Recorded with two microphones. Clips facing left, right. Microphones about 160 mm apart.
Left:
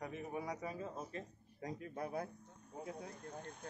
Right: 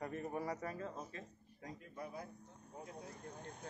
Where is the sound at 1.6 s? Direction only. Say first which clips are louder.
Left 5 dB; 60° left (ahead or behind).